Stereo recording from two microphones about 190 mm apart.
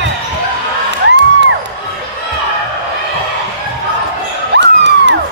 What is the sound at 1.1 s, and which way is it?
Music, 70° right (ahead or behind).